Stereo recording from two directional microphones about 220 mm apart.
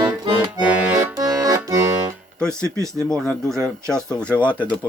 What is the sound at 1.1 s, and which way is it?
Accordion, 15° right (ahead or behind).